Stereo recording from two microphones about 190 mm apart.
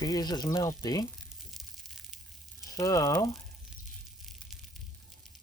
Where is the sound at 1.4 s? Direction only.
Centre (ahead or behind).